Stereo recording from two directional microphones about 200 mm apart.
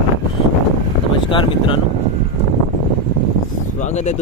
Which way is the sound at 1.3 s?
25° left (ahead or behind).